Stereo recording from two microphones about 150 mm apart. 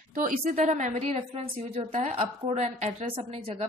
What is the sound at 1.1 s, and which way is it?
A woman's voice, 40° right (ahead or behind).